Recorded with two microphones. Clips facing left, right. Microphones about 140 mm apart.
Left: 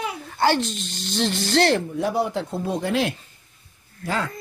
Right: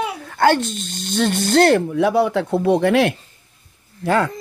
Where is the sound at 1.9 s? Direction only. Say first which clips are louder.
Right 7 dB; 70° right (ahead or behind).